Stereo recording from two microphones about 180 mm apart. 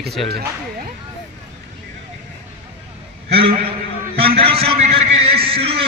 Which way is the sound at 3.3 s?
30° right (ahead or behind).